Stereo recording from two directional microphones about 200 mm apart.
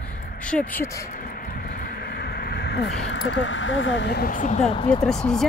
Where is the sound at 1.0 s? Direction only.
45° left (ahead or behind).